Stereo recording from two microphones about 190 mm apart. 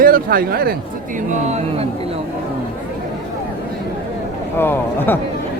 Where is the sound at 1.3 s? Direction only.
35° right (ahead or behind).